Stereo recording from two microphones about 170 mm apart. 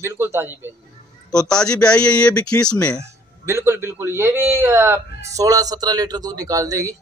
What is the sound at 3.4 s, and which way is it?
A man's voice, 15° right (ahead or behind).